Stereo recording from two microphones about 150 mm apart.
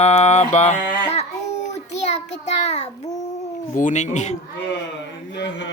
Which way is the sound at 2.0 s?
45° left (ahead or behind).